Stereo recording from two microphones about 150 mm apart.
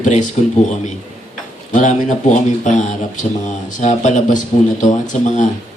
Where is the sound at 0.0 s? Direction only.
55° left (ahead or behind).